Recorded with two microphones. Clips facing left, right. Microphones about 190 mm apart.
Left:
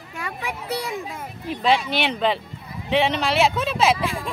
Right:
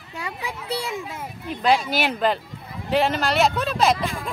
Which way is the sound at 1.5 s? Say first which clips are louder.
Even; centre (ahead or behind).